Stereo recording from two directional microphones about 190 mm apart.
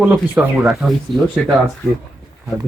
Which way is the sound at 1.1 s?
25° right (ahead or behind).